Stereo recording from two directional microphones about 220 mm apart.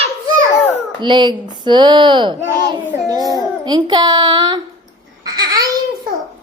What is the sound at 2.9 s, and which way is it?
Child singing, 15° right (ahead or behind).